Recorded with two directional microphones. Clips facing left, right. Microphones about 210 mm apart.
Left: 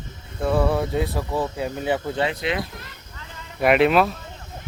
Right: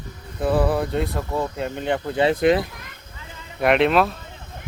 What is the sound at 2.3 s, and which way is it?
Speech, 50° right (ahead or behind).